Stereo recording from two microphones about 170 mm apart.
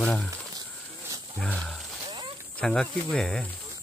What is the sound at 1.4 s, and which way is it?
Speech, 5° left (ahead or behind).